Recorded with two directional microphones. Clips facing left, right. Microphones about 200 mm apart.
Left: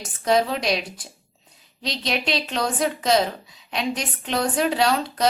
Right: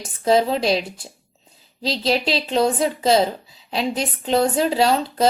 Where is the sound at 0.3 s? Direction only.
30° right (ahead or behind).